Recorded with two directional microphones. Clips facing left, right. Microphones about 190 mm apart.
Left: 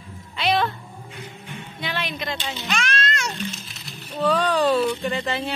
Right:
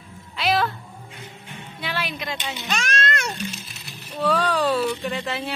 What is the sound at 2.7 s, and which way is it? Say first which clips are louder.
Cat: right 1 dB; 45° right (ahead or behind).